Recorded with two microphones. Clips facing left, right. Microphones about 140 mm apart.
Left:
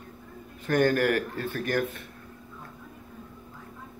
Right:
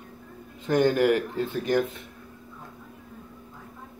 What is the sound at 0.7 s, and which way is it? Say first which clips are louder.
Speech: right 2 dB; 20° right (ahead or behind).